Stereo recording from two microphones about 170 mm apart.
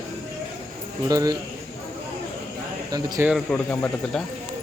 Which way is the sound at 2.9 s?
20° right (ahead or behind).